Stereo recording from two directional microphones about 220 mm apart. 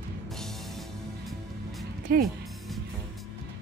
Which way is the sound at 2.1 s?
45° right (ahead or behind).